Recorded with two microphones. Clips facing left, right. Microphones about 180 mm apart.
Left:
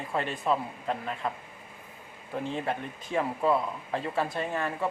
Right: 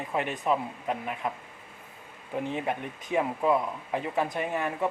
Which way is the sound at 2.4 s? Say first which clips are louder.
Even; 15° right (ahead or behind).